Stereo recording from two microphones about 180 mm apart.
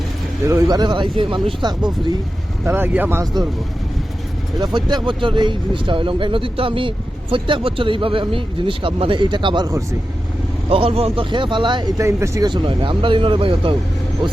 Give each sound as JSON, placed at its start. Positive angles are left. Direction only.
{"t": 0.4, "sound": "speech", "side_deg": -20}
{"t": 2.6, "sound": "speech", "side_deg": -10}
{"t": 4.6, "sound": "speech", "side_deg": -25}
{"t": 10.7, "sound": "speech", "side_deg": -30}